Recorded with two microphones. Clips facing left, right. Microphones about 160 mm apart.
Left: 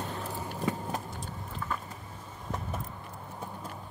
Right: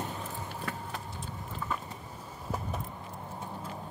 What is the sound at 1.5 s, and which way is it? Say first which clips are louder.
Vehicle: even; 5° right (ahead or behind).